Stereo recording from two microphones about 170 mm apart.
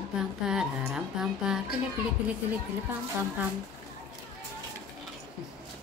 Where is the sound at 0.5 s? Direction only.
5° right (ahead or behind).